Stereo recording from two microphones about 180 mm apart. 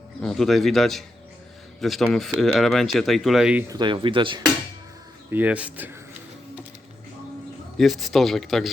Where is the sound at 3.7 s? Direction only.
25° right (ahead or behind).